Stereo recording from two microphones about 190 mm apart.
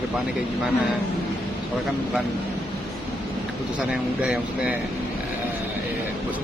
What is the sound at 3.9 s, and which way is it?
Speech, 5° right (ahead or behind).